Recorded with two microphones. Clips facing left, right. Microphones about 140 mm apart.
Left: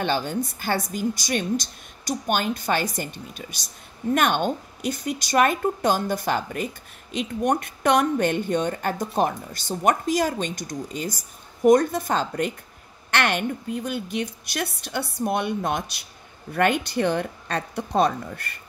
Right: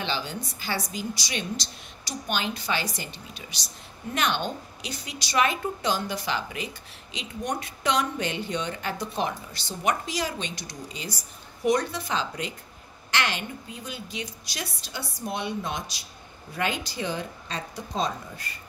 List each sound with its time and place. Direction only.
0.0 s a woman's voice: 50° left (ahead or behind)